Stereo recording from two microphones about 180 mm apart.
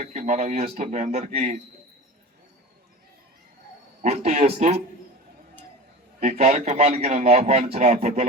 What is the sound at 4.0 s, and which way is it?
Speech, 40° right (ahead or behind).